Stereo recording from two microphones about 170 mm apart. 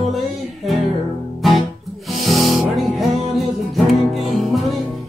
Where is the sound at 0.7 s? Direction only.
Centre (ahead or behind).